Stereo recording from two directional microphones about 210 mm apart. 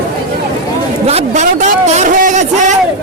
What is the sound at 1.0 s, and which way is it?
Speech, 30° right (ahead or behind).